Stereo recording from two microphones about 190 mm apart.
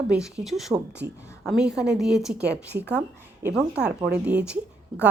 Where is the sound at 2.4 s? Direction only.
60° right (ahead or behind).